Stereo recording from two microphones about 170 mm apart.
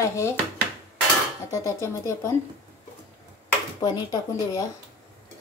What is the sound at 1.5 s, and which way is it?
Speech, 20° left (ahead or behind).